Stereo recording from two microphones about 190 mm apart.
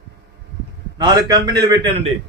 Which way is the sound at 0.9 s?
20° right (ahead or behind).